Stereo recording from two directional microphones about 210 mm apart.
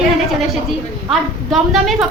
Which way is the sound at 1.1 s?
Centre (ahead or behind).